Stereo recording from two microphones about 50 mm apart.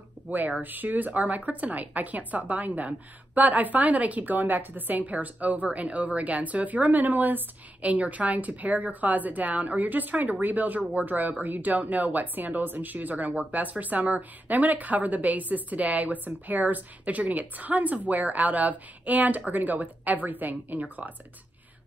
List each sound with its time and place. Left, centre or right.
0.6 s a woman's voice: right